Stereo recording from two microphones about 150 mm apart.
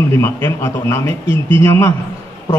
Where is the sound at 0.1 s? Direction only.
15° left (ahead or behind).